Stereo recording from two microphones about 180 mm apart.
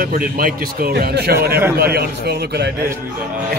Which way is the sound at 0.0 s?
55° right (ahead or behind).